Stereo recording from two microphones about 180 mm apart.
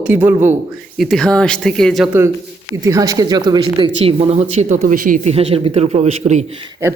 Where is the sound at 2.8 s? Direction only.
20° right (ahead or behind); by 5.3 s 45° right (ahead or behind).